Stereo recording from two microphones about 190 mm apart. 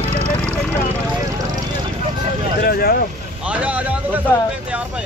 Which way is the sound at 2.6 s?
55° left (ahead or behind).